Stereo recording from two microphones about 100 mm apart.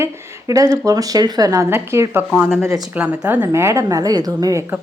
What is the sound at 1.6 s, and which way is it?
A woman's voice, 25° right (ahead or behind).